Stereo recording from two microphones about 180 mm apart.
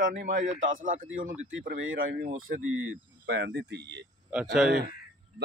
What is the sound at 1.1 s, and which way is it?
Speech, 90° right.